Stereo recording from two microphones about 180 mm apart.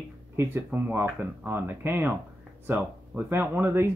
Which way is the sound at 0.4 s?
10° right (ahead or behind).